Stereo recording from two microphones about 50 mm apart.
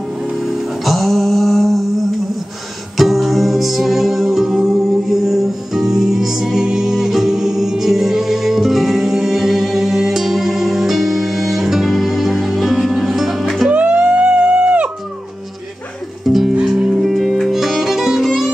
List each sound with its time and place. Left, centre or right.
0.3 s music: centre
3.0 s music: centre
13.7 s music: right
16.3 s music: centre
16.6 s music: centre